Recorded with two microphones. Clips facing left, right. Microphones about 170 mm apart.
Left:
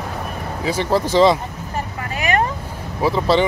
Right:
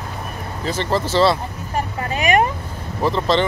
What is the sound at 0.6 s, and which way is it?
Speech, 10° left (ahead or behind).